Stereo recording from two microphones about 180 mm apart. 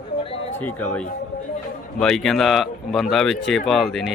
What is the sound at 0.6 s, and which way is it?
Speech, 10° left (ahead or behind).